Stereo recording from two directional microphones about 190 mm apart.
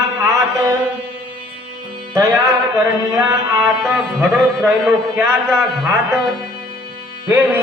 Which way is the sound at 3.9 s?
10° right (ahead or behind).